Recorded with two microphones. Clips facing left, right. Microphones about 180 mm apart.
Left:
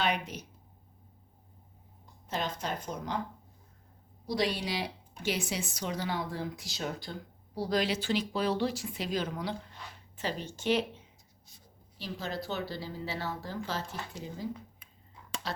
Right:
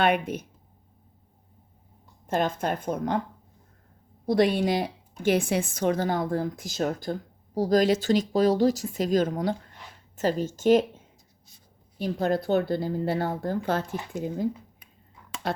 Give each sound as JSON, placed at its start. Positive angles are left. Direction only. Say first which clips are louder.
{"t": 0.0, "sound": "speech", "louder": "right 8 dB", "side_deg": -55}
{"t": 2.2, "sound": "a woman's voice", "louder": "right 9 dB", "side_deg": -50}
{"t": 4.3, "sound": "a woman's voice", "louder": "right 9 dB", "side_deg": -55}
{"t": 15.4, "sound": "a sound", "louder": "right 8 dB", "side_deg": -55}